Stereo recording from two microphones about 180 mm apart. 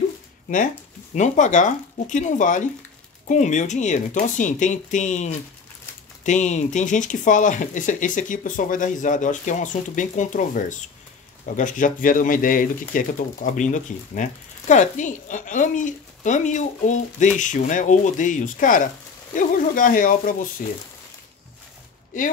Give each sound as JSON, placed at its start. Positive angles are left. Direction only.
{"t": 1.1, "sound": "speech", "side_deg": 40}